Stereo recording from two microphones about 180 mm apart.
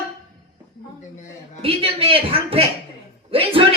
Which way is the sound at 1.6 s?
30° right (ahead or behind).